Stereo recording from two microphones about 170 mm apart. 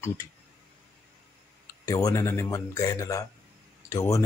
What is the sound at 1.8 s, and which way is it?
Speech, 20° left (ahead or behind).